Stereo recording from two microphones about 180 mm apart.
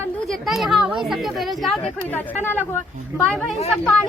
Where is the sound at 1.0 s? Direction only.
Centre (ahead or behind).